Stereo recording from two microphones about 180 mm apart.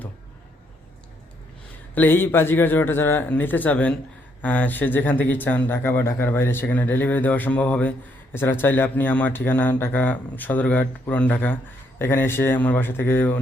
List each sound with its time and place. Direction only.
2.0 s speech: 10° left (ahead or behind)